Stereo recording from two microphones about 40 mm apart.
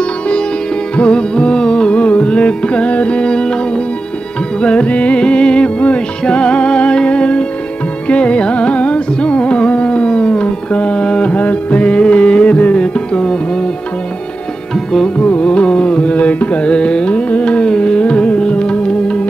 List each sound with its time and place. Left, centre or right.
0.9 s music: left
1.9 s music: left
3.3 s music: centre
15.1 s music: left
16.6 s carnatic music: left